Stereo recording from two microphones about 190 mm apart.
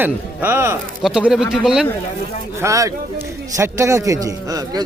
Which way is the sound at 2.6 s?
15° right (ahead or behind).